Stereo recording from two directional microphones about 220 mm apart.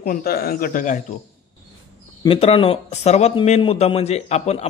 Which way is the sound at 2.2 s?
25° left (ahead or behind).